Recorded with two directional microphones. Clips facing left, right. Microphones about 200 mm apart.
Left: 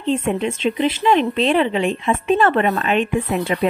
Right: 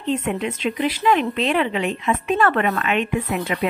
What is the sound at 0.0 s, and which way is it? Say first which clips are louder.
Speech: left 3 dB; 30° left (ahead or behind).